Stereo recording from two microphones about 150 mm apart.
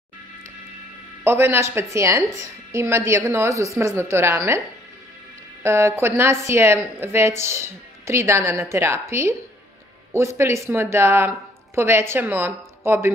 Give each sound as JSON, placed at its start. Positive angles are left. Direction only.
{"t": 1.2, "sound": "a woman's voice", "side_deg": -15}
{"t": 5.6, "sound": "a woman's voice", "side_deg": -20}